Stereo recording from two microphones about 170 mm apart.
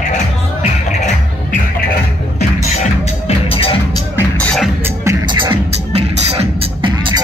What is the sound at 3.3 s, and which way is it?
Music, 35° left (ahead or behind).